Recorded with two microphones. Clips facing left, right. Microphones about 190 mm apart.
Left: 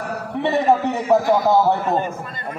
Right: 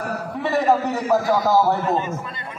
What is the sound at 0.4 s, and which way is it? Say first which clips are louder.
Speech: left 2 dB; 25° left (ahead or behind).